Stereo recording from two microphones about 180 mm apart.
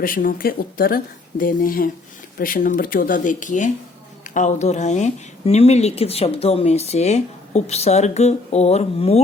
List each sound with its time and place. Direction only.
0.0 s speech: 50° left (ahead or behind); by 9.2 s 35° left (ahead or behind)